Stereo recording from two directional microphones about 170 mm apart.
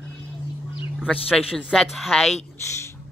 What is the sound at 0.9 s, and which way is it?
A woman's voice, 5° left (ahead or behind).